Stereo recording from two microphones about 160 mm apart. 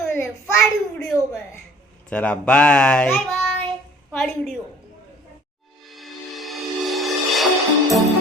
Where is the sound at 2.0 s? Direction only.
10° left (ahead or behind).